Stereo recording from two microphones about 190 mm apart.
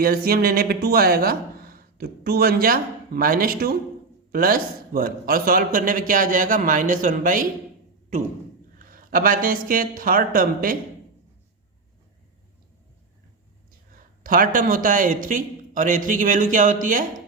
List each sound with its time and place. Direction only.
0.0 s a man's voice: 50° right (ahead or behind)
14.3 s speech: 45° right (ahead or behind)